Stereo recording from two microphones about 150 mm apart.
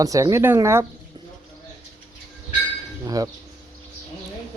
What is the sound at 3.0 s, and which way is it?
Speech, 25° right (ahead or behind).